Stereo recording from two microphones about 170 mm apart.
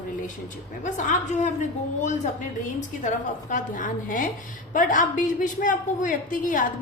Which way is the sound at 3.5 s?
50° left (ahead or behind).